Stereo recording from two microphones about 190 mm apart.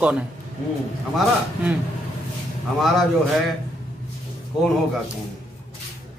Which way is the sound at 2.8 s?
Centre (ahead or behind).